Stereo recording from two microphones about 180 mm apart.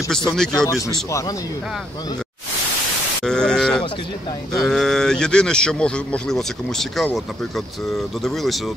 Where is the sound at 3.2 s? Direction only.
5° left (ahead or behind).